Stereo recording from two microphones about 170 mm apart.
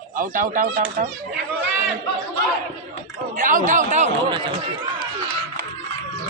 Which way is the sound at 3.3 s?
50° right (ahead or behind).